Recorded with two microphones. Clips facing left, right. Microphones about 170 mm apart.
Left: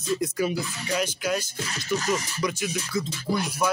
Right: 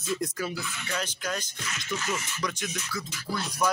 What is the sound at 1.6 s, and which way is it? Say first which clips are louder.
Speech: left 6 dB; 35° left (ahead or behind).